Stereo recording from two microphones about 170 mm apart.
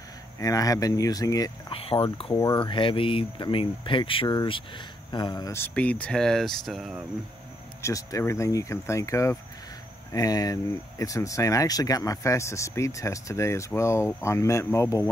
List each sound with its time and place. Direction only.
0.4 s speech: 20° left (ahead or behind)
1.7 s speech: 35° left (ahead or behind)
2.3 s speech: 20° left (ahead or behind); by 7.1 s 5° right (ahead or behind)
7.8 s speech: 20° left (ahead or behind)